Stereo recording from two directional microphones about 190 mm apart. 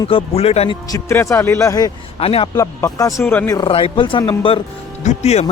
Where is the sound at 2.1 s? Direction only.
30° left (ahead or behind).